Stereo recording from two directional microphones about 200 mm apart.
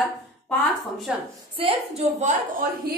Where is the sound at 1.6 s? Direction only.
30° right (ahead or behind).